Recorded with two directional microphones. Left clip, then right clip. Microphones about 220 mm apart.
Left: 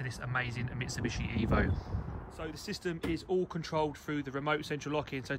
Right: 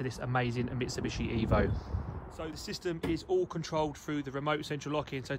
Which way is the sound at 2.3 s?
10° right (ahead or behind).